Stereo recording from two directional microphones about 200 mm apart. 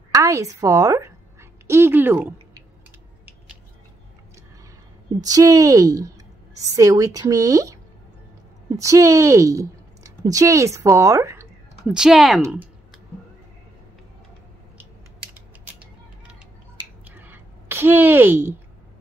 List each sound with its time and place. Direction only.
0.1 s a woman's voice: 15° right (ahead or behind)
5.2 s a woman's voice: 15° right (ahead or behind)
11.8 s speech: centre (ahead or behind)
17.0 s a sound: 10° right (ahead or behind)